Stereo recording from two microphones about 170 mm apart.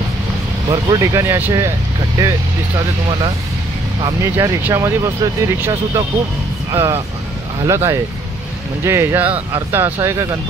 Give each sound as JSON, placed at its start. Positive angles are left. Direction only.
{"t": 0.7, "sound": "speech", "side_deg": -20}
{"t": 4.0, "sound": "speech", "side_deg": -20}